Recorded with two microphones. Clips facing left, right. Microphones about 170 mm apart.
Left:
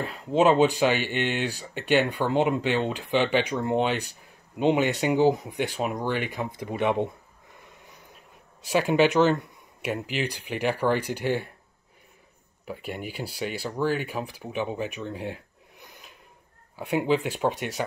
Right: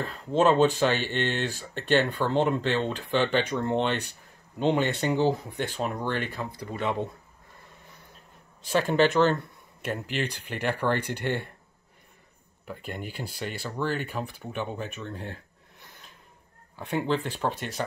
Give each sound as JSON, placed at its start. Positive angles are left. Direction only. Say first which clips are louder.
{"t": 0.0, "sound": "speech", "louder": "left 2 dB", "side_deg": 10}
{"t": 8.7, "sound": "speech", "louder": "left 2 dB", "side_deg": 10}
{"t": 12.6, "sound": "speech", "louder": "left 2 dB", "side_deg": 5}